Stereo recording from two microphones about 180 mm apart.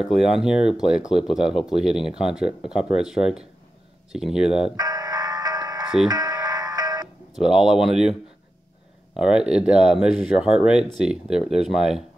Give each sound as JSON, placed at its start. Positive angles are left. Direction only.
{"t": 0.0, "sound": "speech", "side_deg": 0}
{"t": 4.5, "sound": "speech", "side_deg": 30}
{"t": 4.7, "sound": "music", "side_deg": -20}
{"t": 7.3, "sound": "speech", "side_deg": -5}